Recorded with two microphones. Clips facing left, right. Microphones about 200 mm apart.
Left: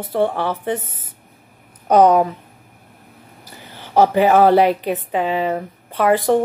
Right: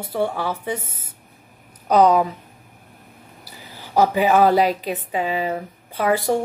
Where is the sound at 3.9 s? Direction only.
45° left (ahead or behind).